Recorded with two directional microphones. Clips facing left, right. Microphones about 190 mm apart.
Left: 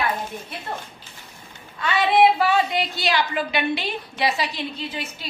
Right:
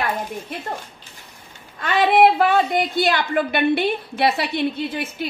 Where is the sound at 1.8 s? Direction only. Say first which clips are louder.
Right 2 dB; 50° right (ahead or behind).